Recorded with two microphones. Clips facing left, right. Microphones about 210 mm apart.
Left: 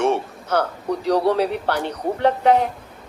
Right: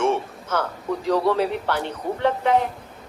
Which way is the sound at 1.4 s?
65° left (ahead or behind).